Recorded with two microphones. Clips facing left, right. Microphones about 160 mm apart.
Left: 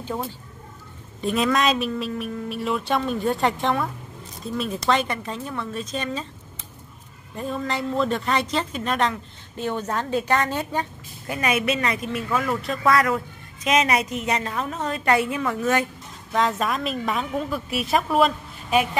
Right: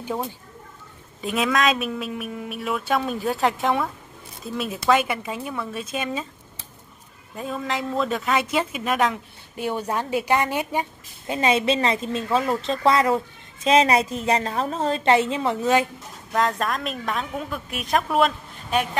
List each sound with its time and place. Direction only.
1.2 s a woman's voice: centre (ahead or behind)
7.3 s a woman's voice: centre (ahead or behind)
11.3 s a woman's voice: 25° right (ahead or behind)
16.3 s a woman's voice: centre (ahead or behind)